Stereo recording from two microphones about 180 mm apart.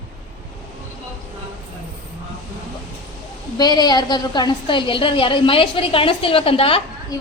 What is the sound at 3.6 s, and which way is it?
A woman's voice, 25° left (ahead or behind).